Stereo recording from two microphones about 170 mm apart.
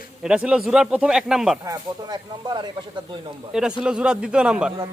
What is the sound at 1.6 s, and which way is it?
Speech, 25° right (ahead or behind).